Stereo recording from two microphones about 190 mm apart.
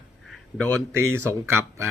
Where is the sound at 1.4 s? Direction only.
15° right (ahead or behind).